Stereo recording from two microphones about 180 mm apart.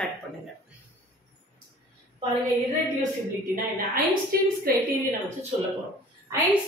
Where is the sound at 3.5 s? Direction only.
55° right (ahead or behind).